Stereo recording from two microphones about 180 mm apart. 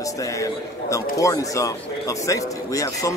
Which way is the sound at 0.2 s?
20° left (ahead or behind).